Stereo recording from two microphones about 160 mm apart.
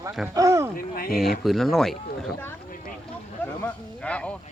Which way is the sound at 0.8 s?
65° left (ahead or behind).